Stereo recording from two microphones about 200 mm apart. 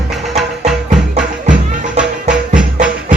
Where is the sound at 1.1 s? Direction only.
40° right (ahead or behind).